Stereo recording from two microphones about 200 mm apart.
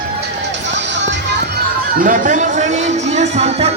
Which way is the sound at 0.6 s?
60° right (ahead or behind).